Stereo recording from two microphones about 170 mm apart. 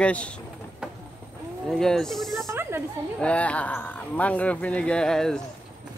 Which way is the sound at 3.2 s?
5° left (ahead or behind).